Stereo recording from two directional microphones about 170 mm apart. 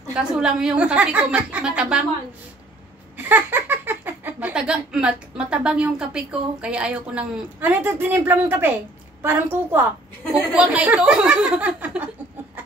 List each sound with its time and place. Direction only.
0.1 s speech: 5° right (ahead or behind)
3.3 s speech: 10° right (ahead or behind)